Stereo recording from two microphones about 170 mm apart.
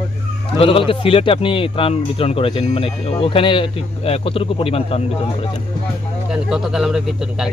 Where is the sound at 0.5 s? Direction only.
35° left (ahead or behind).